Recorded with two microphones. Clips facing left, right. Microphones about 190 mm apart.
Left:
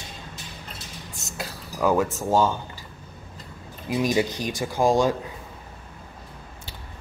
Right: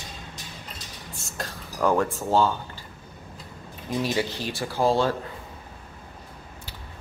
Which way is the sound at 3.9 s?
15° left (ahead or behind).